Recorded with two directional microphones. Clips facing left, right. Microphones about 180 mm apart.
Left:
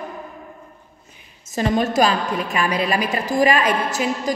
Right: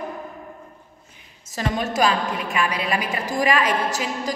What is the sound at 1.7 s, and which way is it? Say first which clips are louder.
A woman's voice: left 2 dB; 35° left (ahead or behind).